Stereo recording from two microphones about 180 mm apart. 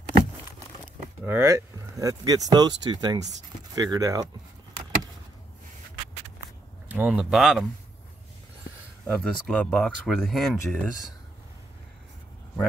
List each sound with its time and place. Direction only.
1.2 s speech: 15° right (ahead or behind)
3.2 s speech: 40° right (ahead or behind)
3.7 s speech: 20° right (ahead or behind)
6.9 s speech: 10° right (ahead or behind)
9.0 s speech: 5° left (ahead or behind)